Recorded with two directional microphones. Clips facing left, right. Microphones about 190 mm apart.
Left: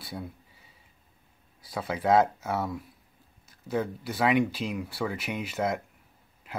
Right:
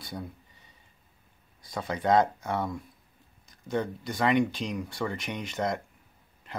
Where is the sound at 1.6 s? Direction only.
5° left (ahead or behind).